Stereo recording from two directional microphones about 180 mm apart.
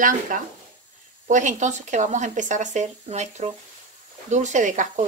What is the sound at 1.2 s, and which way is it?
Speech, 45° right (ahead or behind).